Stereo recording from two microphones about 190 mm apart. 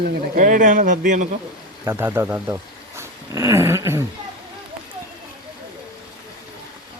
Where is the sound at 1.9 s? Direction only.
15° right (ahead or behind).